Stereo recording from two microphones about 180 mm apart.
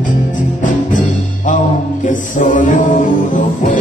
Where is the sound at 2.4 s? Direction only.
45° left (ahead or behind).